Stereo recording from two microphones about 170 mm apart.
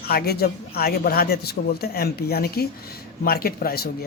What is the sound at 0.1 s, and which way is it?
Speech, 65° left (ahead or behind).